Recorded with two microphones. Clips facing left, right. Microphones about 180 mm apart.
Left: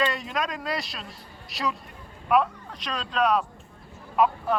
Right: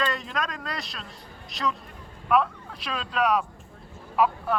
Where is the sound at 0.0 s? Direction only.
5° left (ahead or behind).